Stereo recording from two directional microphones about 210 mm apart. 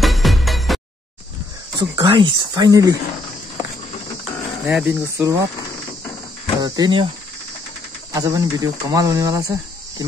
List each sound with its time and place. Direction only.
0.0 s music: centre (ahead or behind)
1.8 s speech: 25° right (ahead or behind)
4.2 s speech: 5° right (ahead or behind)
6.6 s speech: 20° right (ahead or behind)
8.1 s speech: 15° right (ahead or behind)